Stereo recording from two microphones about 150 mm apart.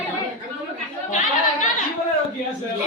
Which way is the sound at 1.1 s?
60° left (ahead or behind).